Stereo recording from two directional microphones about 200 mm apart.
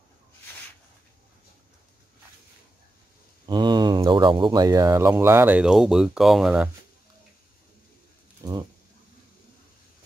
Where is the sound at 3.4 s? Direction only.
20° right (ahead or behind); by 6.7 s 5° right (ahead or behind).